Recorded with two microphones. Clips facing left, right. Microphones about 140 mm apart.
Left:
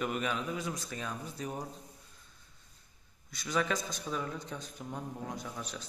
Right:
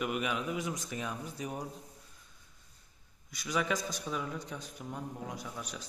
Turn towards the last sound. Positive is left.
turn(degrees=-10)  # may be behind; listen again after turning